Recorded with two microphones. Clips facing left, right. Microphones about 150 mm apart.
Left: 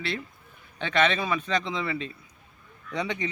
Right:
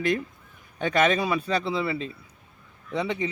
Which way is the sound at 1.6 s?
5° right (ahead or behind).